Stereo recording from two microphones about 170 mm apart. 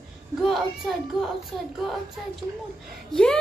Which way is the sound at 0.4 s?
Centre (ahead or behind).